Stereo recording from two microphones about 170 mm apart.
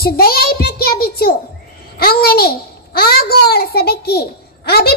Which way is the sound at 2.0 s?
65° left (ahead or behind).